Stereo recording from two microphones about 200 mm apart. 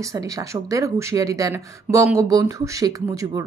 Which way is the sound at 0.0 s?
15° right (ahead or behind).